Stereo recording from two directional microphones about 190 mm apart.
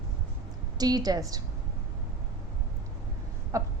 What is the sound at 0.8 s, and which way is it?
Speech, 20° right (ahead or behind).